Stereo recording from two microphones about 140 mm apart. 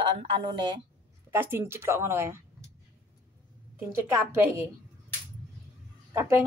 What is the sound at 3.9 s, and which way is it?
Speech, 20° right (ahead or behind).